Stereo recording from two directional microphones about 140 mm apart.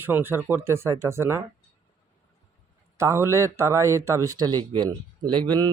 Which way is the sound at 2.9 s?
20° right (ahead or behind).